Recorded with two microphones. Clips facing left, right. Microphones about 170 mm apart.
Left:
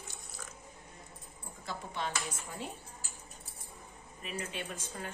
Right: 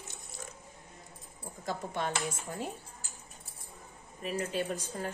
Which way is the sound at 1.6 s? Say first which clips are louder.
Right 4 dB; 50° right (ahead or behind).